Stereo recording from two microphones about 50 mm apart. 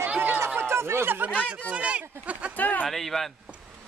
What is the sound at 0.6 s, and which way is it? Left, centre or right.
Speech, right.